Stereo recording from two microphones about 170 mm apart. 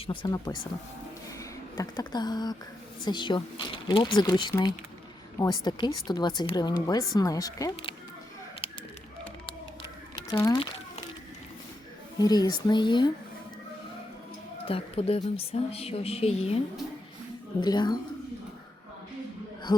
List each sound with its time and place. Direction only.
0.1 s speech: 25° left (ahead or behind)
8.6 s a sound: 30° left (ahead or behind)
10.2 s speech: 20° left (ahead or behind)
12.2 s speech: 25° left (ahead or behind)
14.7 s speech: 35° left (ahead or behind)
17.6 s speech: 25° left (ahead or behind)